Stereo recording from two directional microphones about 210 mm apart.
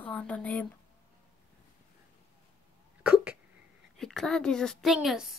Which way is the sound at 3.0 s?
5° right (ahead or behind).